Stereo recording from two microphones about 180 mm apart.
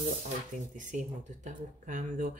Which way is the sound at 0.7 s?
45° right (ahead or behind).